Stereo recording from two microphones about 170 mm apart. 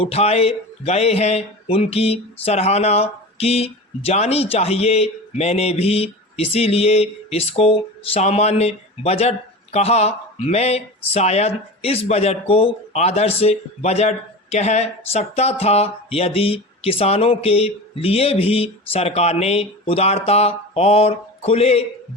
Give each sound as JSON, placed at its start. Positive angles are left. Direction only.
{"t": 0.0, "sound": "speech", "side_deg": 35}